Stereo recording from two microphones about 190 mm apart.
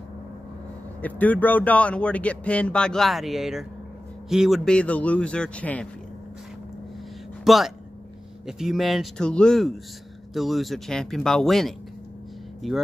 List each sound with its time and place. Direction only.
1.0 s a man's voice: 10° left (ahead or behind)
7.4 s a man's voice: centre (ahead or behind)